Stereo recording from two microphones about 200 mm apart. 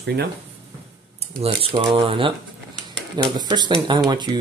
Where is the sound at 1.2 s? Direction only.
30° right (ahead or behind).